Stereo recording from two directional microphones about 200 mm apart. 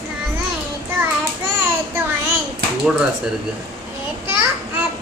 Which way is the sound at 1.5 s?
10° right (ahead or behind).